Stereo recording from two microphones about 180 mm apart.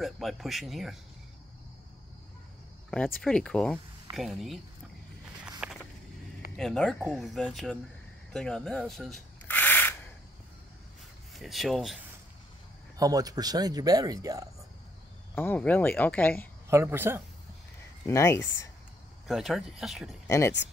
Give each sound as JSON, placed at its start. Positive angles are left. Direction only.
{"t": 0.0, "sound": "speech", "side_deg": 0}
{"t": 3.2, "sound": "speech", "side_deg": 5}
{"t": 5.6, "sound": "a sound", "side_deg": -5}
{"t": 6.5, "sound": "speech", "side_deg": 0}
{"t": 8.3, "sound": "a sound", "side_deg": 5}
{"t": 11.3, "sound": "speech", "side_deg": 0}
{"t": 12.9, "sound": "speech", "side_deg": -20}
{"t": 15.3, "sound": "speech", "side_deg": 10}
{"t": 16.6, "sound": "speech", "side_deg": -15}
{"t": 18.0, "sound": "speech", "side_deg": 15}
{"t": 19.2, "sound": "speech", "side_deg": 0}
{"t": 20.2, "sound": "speech", "side_deg": 15}